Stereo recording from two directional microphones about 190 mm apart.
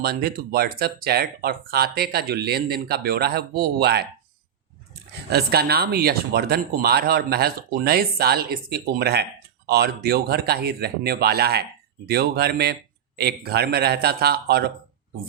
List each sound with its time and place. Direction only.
0.0 s speech: 55° right (ahead or behind)
5.3 s speech: 55° right (ahead or behind)